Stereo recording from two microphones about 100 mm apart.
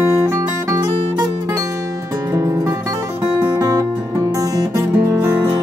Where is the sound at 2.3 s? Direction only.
30° right (ahead or behind).